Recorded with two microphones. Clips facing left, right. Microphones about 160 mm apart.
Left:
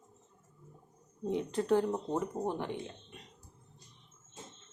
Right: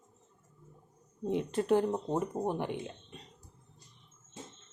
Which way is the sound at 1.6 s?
15° right (ahead or behind).